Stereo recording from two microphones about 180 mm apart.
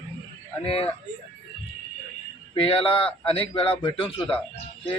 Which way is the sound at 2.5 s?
30° left (ahead or behind).